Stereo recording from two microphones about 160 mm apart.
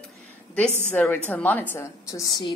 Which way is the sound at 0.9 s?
10° left (ahead or behind).